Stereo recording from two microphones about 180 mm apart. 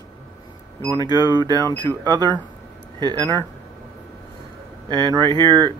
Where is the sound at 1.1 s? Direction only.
25° right (ahead or behind).